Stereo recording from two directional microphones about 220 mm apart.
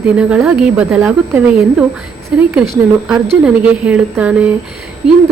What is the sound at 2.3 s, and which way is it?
A woman's voice, 5° right (ahead or behind).